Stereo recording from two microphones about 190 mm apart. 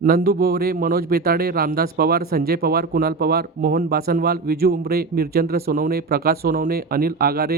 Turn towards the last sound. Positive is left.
turn(degrees=-55)  # may be behind; listen again after turning